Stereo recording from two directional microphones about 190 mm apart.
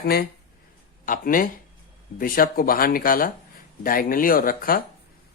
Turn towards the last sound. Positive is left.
turn(degrees=50)  # may be behind; listen again after turning